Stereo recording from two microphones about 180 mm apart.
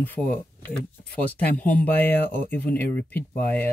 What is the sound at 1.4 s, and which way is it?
Speech, 10° left (ahead or behind).